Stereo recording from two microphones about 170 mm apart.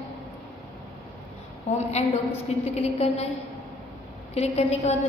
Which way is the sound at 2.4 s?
40° left (ahead or behind).